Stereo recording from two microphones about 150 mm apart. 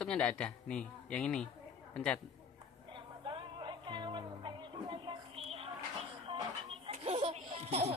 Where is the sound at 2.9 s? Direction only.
35° right (ahead or behind).